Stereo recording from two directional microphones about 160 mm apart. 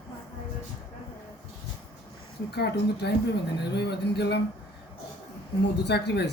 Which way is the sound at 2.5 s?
90° left.